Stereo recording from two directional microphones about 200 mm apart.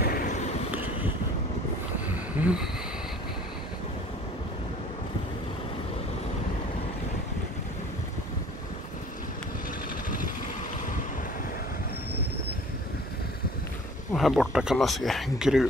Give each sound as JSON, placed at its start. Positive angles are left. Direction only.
{"t": 0.0, "sound": "a sound", "side_deg": 45}
{"t": 2.3, "sound": "speech", "side_deg": -5}
{"t": 14.1, "sound": "speech", "side_deg": 0}